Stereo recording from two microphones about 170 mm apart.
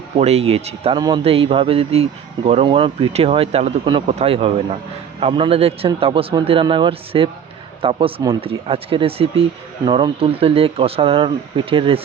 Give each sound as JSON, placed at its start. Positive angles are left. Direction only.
{"t": 0.2, "sound": "speech", "side_deg": -35}
{"t": 0.9, "sound": "a man's voice", "side_deg": -25}
{"t": 1.2, "sound": "speech", "side_deg": -35}